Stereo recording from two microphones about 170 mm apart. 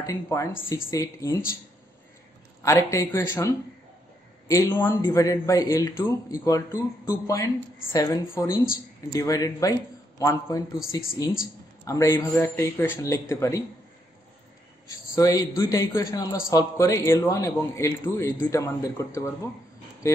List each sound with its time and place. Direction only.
0.0 s a man's voice: 20° left (ahead or behind)
2.6 s a man's voice: 20° left (ahead or behind)
15.1 s a man's voice: 20° left (ahead or behind)